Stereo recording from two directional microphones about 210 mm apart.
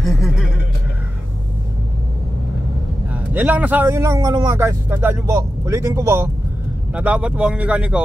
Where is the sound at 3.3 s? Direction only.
5° right (ahead or behind).